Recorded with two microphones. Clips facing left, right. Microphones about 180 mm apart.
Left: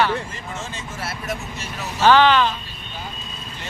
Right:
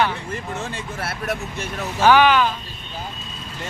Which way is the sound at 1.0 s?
60° right (ahead or behind).